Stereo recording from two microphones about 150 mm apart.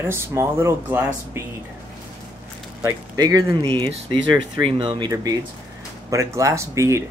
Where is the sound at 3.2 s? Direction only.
25° right (ahead or behind).